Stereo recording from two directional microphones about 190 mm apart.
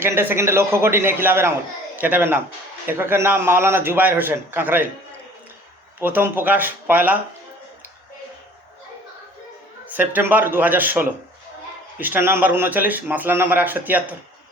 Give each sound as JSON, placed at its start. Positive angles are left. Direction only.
{"t": 0.0, "sound": "a man's voice", "side_deg": -10}
{"t": 6.0, "sound": "a man's voice", "side_deg": -10}
{"t": 9.9, "sound": "a man's voice", "side_deg": -10}